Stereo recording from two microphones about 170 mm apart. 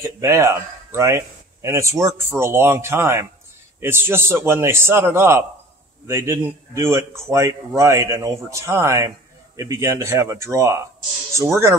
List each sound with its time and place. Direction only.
0.0 s speech: 15° right (ahead or behind)